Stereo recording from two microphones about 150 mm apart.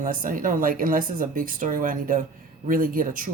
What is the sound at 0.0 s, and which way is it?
Speech, 65° right (ahead or behind).